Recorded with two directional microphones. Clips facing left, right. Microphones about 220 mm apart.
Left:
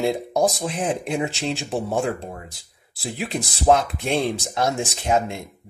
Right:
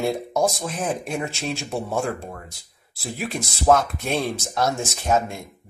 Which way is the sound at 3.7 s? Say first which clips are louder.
Left 1 dB; 20° left (ahead or behind).